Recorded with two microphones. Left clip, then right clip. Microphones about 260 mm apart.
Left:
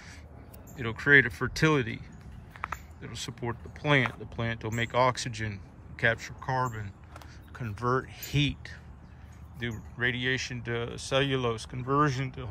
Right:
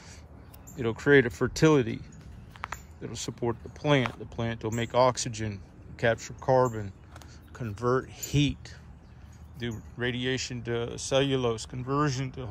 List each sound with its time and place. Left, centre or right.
0.7 s speech: centre